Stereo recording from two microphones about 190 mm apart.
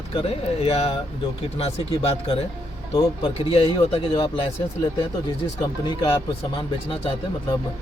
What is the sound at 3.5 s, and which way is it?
Speech, 30° left (ahead or behind).